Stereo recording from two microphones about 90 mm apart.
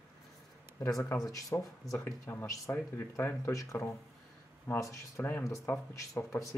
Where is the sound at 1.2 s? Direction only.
40° left (ahead or behind).